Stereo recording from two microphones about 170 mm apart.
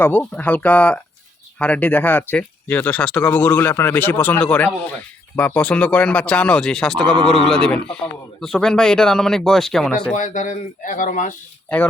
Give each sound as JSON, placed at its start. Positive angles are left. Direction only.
{"t": 0.0, "sound": "speech", "side_deg": 10}
{"t": 10.2, "sound": "speech", "side_deg": 50}